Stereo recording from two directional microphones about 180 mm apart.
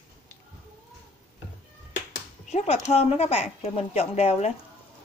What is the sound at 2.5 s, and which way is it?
Speech, 35° left (ahead or behind).